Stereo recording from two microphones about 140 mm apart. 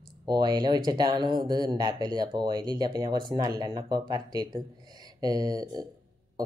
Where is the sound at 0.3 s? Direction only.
30° right (ahead or behind).